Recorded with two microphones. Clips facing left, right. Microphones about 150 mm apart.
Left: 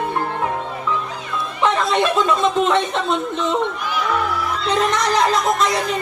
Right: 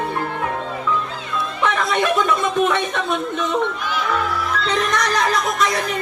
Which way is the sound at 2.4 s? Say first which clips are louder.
Left 2 dB; 25° left (ahead or behind).